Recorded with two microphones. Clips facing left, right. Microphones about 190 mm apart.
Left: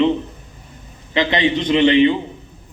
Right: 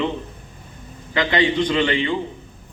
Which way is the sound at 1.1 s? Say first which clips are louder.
Left 1 dB; 20° left (ahead or behind).